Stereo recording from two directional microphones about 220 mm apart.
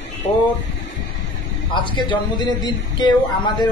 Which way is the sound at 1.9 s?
20° left (ahead or behind).